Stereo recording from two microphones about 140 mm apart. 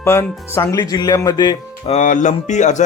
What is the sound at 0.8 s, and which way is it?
Speech, 30° left (ahead or behind).